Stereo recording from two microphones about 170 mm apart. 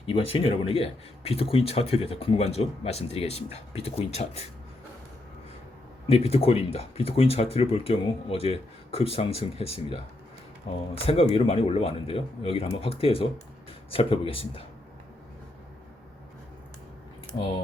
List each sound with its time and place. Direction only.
0.1 s speech: 35° left (ahead or behind)
6.1 s speech: 35° left (ahead or behind)